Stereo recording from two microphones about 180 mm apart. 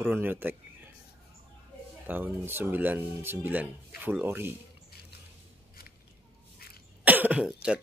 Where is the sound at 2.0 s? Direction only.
10° right (ahead or behind).